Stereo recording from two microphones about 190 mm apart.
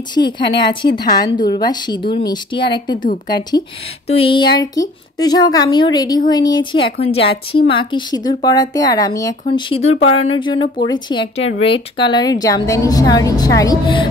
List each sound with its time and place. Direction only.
0.2 s speech: 60° left (ahead or behind)
0.7 s speech: 25° left (ahead or behind)